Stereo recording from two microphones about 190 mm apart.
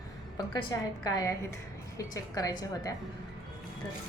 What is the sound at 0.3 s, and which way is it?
A woman's voice, 20° left (ahead or behind).